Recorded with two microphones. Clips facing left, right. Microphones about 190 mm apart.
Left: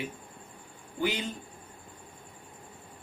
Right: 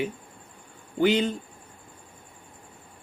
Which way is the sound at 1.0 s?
65° right (ahead or behind).